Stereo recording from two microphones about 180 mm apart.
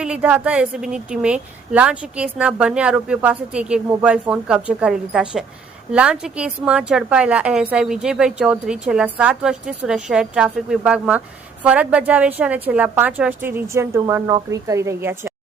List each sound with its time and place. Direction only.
0.0 s a woman's voice: 5° right (ahead or behind)